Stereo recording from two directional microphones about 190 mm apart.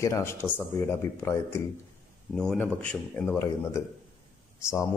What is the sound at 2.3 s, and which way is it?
Speech, 5° left (ahead or behind).